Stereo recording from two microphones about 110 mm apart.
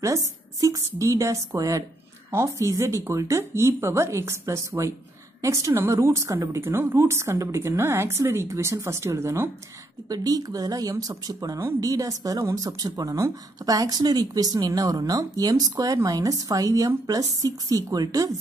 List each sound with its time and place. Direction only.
0.0 s a woman's voice: 30° right (ahead or behind)